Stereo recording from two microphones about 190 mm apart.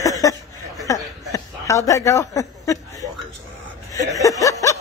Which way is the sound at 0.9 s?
15° left (ahead or behind).